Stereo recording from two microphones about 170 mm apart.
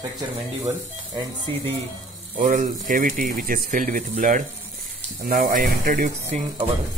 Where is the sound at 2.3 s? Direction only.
50° right (ahead or behind).